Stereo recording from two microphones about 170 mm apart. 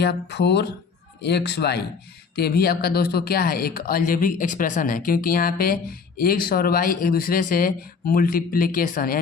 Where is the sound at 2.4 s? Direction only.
65° left (ahead or behind).